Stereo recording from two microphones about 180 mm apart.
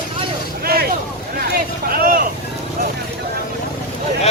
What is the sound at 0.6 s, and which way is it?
Vehicle, 55° right (ahead or behind).